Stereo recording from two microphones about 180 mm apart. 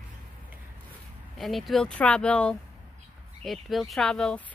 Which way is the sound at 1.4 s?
Centre (ahead or behind).